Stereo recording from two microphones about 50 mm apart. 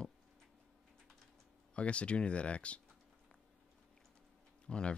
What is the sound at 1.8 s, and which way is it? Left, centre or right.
Speech, left.